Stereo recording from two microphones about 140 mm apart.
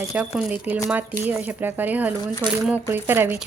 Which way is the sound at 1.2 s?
15° right (ahead or behind).